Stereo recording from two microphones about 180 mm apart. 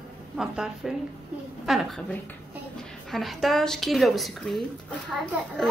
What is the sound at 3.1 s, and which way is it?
Speech, centre (ahead or behind).